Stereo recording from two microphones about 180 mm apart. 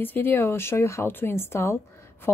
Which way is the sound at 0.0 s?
10° left (ahead or behind).